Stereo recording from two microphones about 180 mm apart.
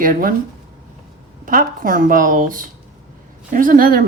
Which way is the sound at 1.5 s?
50° right (ahead or behind).